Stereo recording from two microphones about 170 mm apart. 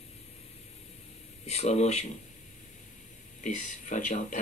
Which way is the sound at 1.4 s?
40° left (ahead or behind).